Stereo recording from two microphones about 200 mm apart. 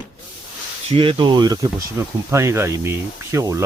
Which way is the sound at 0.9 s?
25° right (ahead or behind).